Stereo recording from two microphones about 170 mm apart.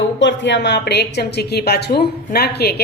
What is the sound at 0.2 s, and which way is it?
A woman's voice, 90° left.